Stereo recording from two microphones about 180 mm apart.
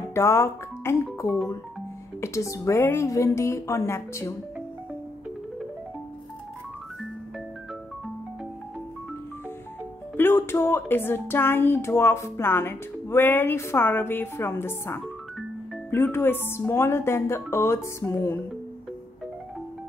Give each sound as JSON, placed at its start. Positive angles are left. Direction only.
{"t": 0.1, "sound": "speech", "side_deg": 15}
{"t": 10.1, "sound": "speech", "side_deg": 10}